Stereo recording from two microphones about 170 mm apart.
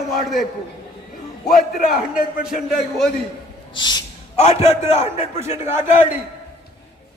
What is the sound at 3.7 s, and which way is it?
Owl, 25° left (ahead or behind).